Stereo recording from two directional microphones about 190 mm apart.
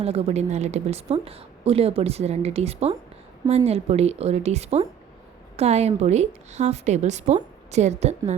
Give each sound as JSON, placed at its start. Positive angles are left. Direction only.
{"t": 0.0, "sound": "a woman's voice", "side_deg": -30}